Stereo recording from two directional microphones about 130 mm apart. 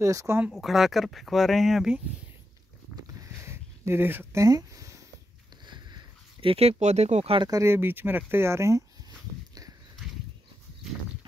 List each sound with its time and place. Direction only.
0.0 s speech: 25° right (ahead or behind)
0.5 s speech: centre (ahead or behind)
3.3 s a sound: 20° right (ahead or behind)
6.4 s speech: 45° right (ahead or behind)
7.4 s speech: 25° right (ahead or behind)